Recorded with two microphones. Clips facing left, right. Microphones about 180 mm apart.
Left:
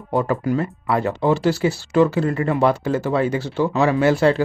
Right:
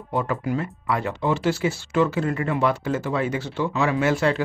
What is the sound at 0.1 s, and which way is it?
Speech, 40° left (ahead or behind).